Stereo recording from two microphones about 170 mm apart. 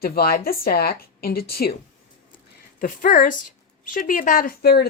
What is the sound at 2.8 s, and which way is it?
A woman's voice, 55° left (ahead or behind).